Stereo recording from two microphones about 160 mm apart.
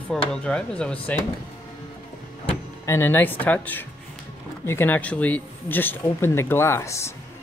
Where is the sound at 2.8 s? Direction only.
15° left (ahead or behind).